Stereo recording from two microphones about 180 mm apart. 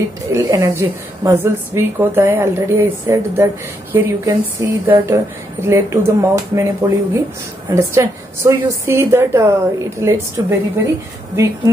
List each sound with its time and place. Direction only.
0.3 s a woman's voice: 15° right (ahead or behind)